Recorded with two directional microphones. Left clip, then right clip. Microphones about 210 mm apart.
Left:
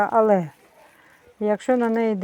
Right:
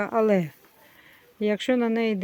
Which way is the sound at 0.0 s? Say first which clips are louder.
Left 5 dB; 20° right (ahead or behind).